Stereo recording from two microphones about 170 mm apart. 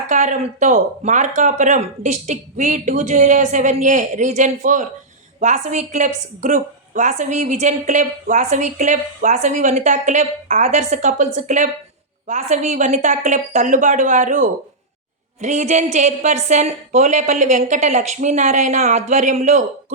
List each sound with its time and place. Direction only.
0.1 s a woman's voice: 45° right (ahead or behind)